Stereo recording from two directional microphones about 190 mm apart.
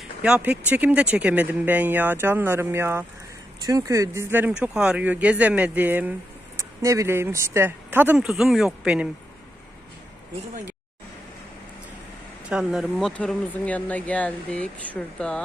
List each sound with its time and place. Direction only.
0.0 s speech: 5° right (ahead or behind)
12.5 s speech: 5° right (ahead or behind)